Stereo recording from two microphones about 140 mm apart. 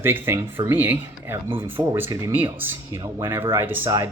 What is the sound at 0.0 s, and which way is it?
A man's voice, 15° right (ahead or behind).